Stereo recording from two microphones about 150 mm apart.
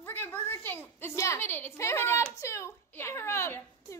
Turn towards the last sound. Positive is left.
turn(degrees=15)  # may be behind; listen again after turning